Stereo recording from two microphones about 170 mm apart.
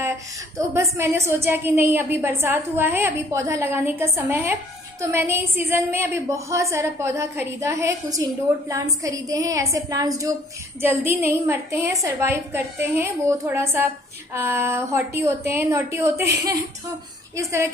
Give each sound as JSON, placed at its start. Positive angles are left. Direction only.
{"t": 0.7, "sound": "a woman's voice", "side_deg": -15}
{"t": 17.4, "sound": "a woman's voice", "side_deg": -15}